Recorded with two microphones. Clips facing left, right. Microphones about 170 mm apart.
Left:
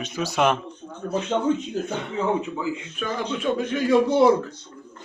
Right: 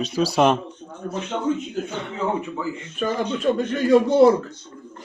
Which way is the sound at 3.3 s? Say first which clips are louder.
Even; 5° left (ahead or behind).